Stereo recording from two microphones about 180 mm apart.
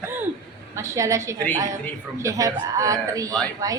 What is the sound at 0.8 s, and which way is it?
A woman's voice, 15° right (ahead or behind).